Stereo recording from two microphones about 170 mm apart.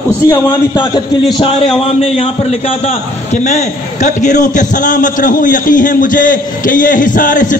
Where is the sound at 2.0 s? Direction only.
35° left (ahead or behind).